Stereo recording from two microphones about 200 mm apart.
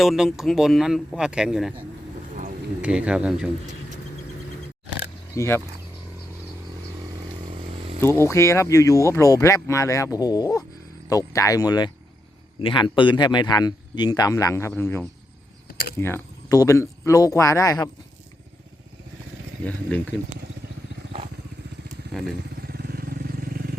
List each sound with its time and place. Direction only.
0.0 s speech: centre (ahead or behind)
2.8 s speech: 5° right (ahead or behind)
5.3 s speech: 15° left (ahead or behind)
7.5 s motorcycle: 25° right (ahead or behind)
8.0 s speech: 15° left (ahead or behind)
19.6 s speech: 5° left (ahead or behind)
22.1 s speech: centre (ahead or behind)
22.6 s vehicle: 50° right (ahead or behind)